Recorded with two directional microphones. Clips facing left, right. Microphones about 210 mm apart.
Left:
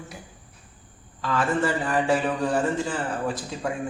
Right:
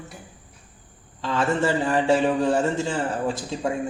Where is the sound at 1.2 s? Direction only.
25° right (ahead or behind).